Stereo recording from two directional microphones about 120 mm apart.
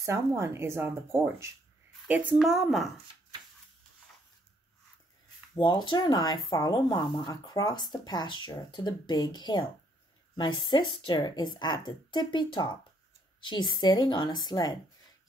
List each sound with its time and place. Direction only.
0.0 s speech: 25° right (ahead or behind); by 2.9 s centre (ahead or behind)
5.6 s speech: 40° left (ahead or behind)